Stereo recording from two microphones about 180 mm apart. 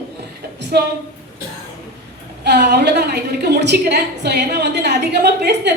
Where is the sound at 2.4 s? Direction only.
65° right (ahead or behind).